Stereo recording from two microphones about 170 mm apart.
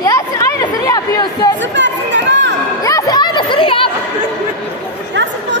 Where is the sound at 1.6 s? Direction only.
90° right.